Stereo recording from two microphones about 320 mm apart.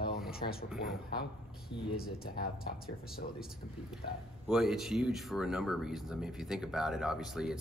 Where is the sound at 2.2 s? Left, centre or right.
Left.